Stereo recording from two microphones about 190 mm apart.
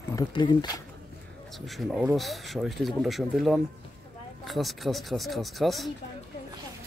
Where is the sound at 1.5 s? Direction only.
Centre (ahead or behind).